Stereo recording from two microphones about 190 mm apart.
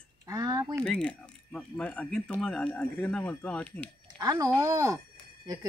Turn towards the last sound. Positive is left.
turn(degrees=-20)  # may be behind; listen again after turning